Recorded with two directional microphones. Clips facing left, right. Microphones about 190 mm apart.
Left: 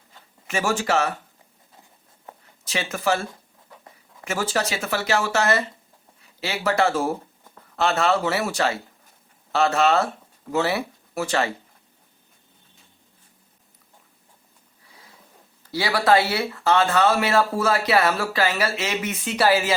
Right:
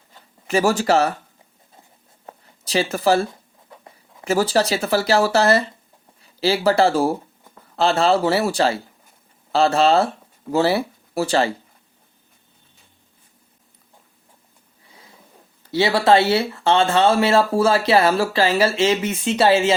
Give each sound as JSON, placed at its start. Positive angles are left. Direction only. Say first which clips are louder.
{"t": 0.4, "sound": "speech", "louder": "right 6 dB", "side_deg": -35}
{"t": 2.2, "sound": "a sound", "louder": "right 3 dB", "side_deg": -35}
{"t": 4.2, "sound": "speech", "louder": "right 7 dB", "side_deg": -35}
{"t": 15.7, "sound": "speech", "louder": "right 4 dB", "side_deg": -25}